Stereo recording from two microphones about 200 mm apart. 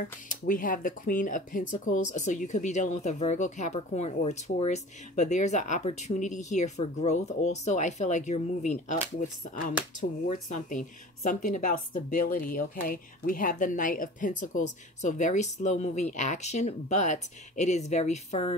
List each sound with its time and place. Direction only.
0.0 s speech: 40° left (ahead or behind)
9.9 s speech: 40° left (ahead or behind)